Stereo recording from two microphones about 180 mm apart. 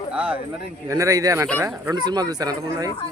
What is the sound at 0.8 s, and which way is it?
Speech, 20° right (ahead or behind).